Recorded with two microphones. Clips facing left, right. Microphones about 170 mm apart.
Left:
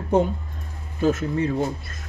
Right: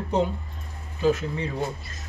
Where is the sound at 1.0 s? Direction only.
45° left (ahead or behind).